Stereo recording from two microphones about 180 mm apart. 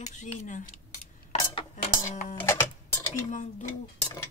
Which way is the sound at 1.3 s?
30° left (ahead or behind).